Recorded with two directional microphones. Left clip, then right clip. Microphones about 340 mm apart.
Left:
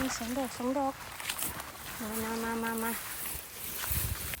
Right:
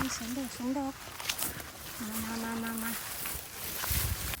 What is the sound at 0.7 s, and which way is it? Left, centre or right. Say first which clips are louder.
Speech: left 4 dB; centre.